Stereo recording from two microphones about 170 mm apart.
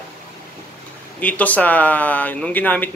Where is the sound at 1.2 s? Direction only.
10° left (ahead or behind).